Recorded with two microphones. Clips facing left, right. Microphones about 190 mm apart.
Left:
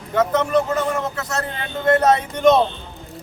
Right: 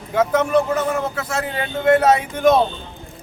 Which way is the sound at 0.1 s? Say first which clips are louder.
Right 1 dB; 10° right (ahead or behind).